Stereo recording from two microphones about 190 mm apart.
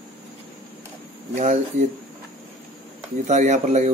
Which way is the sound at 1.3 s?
40° right (ahead or behind).